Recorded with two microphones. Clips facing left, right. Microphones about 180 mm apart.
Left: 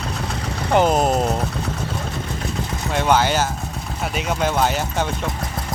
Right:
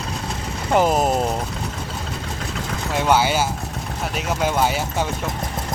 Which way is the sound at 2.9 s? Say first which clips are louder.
Even; 10° right (ahead or behind).